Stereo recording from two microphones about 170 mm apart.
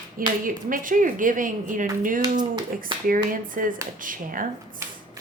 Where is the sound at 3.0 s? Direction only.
55° right (ahead or behind).